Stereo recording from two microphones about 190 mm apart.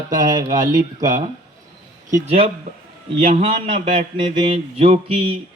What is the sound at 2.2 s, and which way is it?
A man's voice, 30° right (ahead or behind).